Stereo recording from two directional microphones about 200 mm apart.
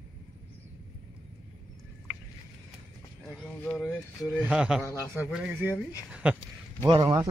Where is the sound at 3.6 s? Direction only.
Centre (ahead or behind).